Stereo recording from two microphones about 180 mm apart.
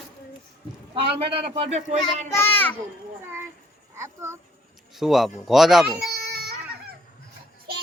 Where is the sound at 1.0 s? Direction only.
30° right (ahead or behind).